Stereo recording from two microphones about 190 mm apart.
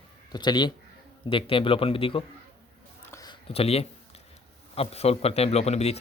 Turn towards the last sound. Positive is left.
turn(degrees=35)  # may be behind; listen again after turning